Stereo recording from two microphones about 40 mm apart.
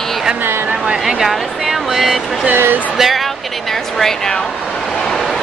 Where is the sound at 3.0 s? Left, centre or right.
Centre.